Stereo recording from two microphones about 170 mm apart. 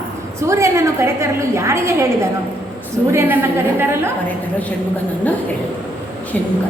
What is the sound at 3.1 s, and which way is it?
A woman's voice, 15° right (ahead or behind).